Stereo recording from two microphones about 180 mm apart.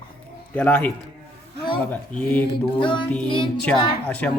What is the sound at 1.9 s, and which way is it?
Speech, 10° left (ahead or behind).